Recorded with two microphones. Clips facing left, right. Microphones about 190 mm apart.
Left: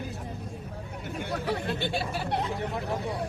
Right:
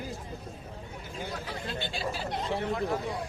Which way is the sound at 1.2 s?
65° left (ahead or behind).